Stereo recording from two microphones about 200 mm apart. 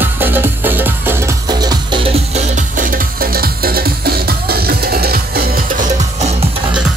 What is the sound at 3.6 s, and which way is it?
Music, 50° right (ahead or behind).